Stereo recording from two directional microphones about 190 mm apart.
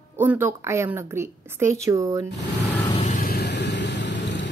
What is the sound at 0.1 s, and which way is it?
A woman's voice, 10° right (ahead or behind).